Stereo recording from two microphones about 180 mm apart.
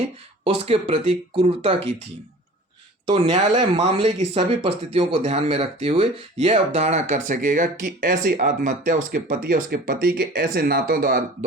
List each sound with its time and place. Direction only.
0.4 s speech: 35° right (ahead or behind)
3.1 s speech: 40° right (ahead or behind); by 11.2 s 55° right (ahead or behind)